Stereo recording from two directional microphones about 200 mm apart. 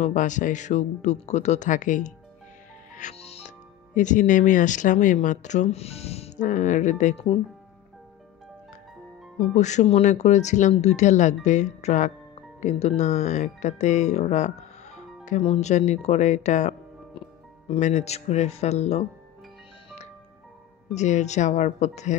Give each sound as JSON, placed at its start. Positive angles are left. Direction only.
{"t": 0.0, "sound": "speech", "side_deg": 40}
{"t": 9.6, "sound": "speech", "side_deg": 35}
{"t": 20.9, "sound": "speech", "side_deg": 35}